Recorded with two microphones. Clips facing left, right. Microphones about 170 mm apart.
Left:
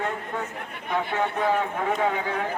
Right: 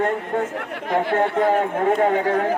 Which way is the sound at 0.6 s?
85° right.